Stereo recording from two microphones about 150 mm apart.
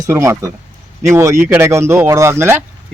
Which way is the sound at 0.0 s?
20° right (ahead or behind).